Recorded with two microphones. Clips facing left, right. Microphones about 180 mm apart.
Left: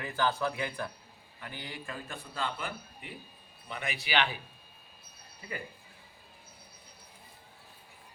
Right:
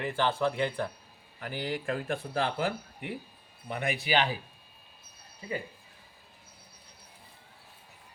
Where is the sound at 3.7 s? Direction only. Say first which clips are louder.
Right 6 dB; 50° right (ahead or behind).